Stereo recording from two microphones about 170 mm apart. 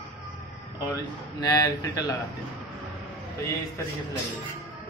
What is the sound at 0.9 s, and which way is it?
A man's voice, 20° left (ahead or behind).